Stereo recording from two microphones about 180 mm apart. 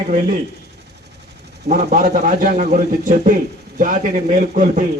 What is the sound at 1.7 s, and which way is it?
A man's voice, 45° right (ahead or behind).